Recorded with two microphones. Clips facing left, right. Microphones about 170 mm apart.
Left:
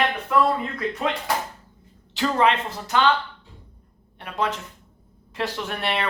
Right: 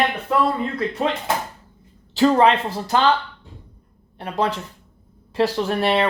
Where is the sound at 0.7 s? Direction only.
30° right (ahead or behind).